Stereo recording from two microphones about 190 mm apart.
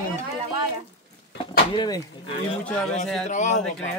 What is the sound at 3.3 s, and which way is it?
Speech, 40° left (ahead or behind).